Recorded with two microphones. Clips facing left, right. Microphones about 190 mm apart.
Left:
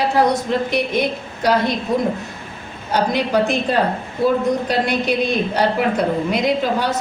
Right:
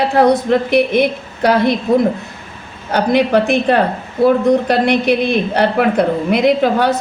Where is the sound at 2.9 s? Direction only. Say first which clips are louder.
Right 5 dB; 60° right (ahead or behind).